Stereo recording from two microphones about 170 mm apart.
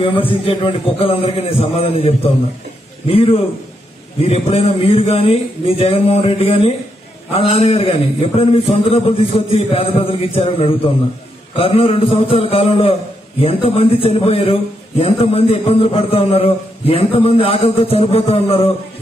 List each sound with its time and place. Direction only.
0.1 s a man's voice: 30° left (ahead or behind)